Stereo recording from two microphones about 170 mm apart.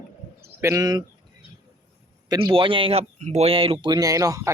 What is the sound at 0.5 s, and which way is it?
Speech, 20° right (ahead or behind).